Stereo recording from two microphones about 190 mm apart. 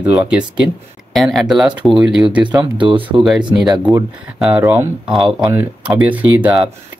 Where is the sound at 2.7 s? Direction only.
25° right (ahead or behind).